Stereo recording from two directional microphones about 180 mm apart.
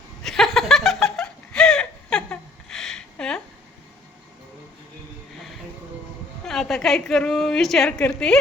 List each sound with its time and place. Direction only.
0.2 s laughter: centre (ahead or behind)
6.4 s a woman's voice: centre (ahead or behind)